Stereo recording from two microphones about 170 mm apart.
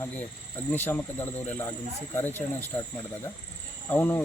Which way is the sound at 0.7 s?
10° left (ahead or behind).